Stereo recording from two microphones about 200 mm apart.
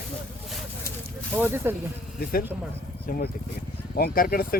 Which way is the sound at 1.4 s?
10° right (ahead or behind).